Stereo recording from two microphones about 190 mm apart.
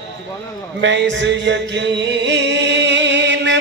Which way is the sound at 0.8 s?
70° right (ahead or behind).